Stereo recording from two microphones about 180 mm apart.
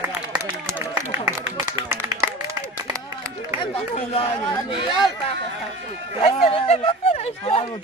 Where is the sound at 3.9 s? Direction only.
35° left (ahead or behind).